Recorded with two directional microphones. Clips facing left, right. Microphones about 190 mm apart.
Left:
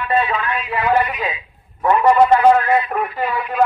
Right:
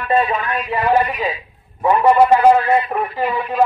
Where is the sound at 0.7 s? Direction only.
10° right (ahead or behind).